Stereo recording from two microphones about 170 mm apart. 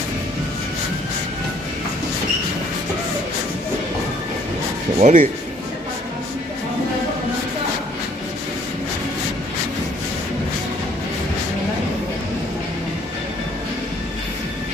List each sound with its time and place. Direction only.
4.9 s speech: 45° right (ahead or behind)